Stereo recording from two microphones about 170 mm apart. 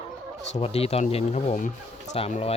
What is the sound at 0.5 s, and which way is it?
Speech, 35° left (ahead or behind).